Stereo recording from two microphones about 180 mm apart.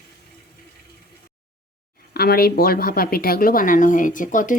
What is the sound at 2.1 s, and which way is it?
Speech, 60° left (ahead or behind).